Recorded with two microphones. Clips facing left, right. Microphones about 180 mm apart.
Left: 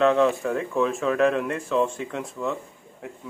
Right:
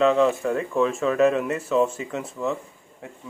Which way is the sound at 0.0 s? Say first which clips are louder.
Right 1 dB; centre (ahead or behind).